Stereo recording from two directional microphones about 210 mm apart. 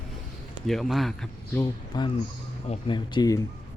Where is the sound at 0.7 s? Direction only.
Centre (ahead or behind).